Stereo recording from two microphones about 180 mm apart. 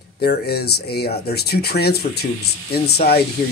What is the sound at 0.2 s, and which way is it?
Speech, 60° left (ahead or behind).